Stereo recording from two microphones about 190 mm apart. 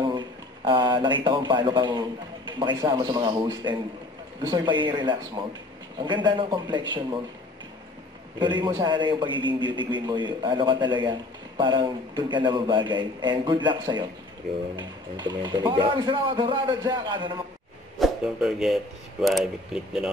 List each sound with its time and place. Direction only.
0.7 s a man's voice: 25° right (ahead or behind)
8.4 s a man's voice: 25° right (ahead or behind)
17.9 s speech: centre (ahead or behind)